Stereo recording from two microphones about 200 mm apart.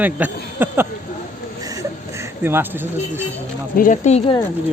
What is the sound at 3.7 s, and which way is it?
Speech, 40° left (ahead or behind).